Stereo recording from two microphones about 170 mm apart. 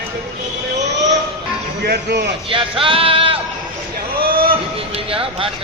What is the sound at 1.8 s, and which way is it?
Speech, 75° right (ahead or behind).